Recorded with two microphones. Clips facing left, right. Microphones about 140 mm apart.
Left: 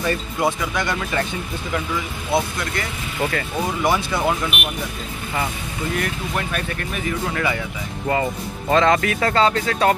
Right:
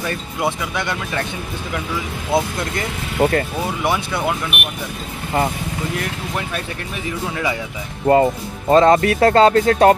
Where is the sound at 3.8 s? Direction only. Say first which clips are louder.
Left 1 dB; centre (ahead or behind).